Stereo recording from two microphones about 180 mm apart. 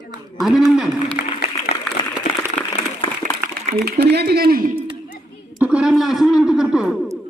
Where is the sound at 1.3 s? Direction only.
35° left (ahead or behind).